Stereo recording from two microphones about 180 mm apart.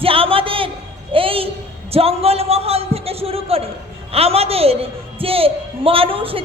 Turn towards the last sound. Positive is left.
turn(degrees=-30)  # may be behind; listen again after turning